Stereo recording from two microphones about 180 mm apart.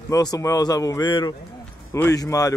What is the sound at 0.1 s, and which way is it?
Speech, 20° left (ahead or behind).